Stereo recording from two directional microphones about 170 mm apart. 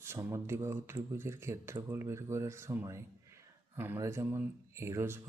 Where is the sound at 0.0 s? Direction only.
15° right (ahead or behind).